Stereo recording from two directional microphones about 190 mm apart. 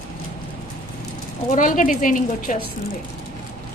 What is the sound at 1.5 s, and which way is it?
A woman's voice, 45° left (ahead or behind).